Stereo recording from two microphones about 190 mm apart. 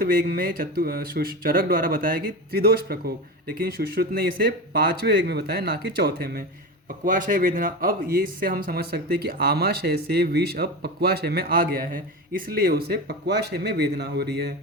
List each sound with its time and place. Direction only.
0.0 s speech: 50° right (ahead or behind)